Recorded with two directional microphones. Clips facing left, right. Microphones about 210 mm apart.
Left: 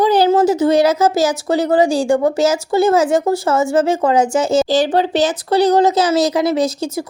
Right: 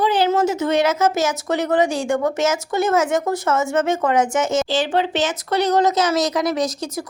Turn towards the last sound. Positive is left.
turn(degrees=30)  # may be behind; listen again after turning